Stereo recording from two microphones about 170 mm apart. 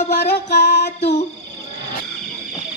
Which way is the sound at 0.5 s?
75° left (ahead or behind).